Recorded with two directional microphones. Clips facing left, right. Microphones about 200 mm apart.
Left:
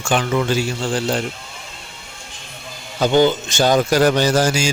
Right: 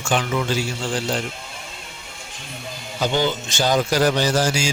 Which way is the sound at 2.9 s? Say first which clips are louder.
Left 7 dB; 50° left (ahead or behind).